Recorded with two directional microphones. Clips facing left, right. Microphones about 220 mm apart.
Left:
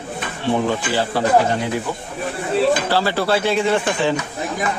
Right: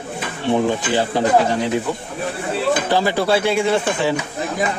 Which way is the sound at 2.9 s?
15° right (ahead or behind).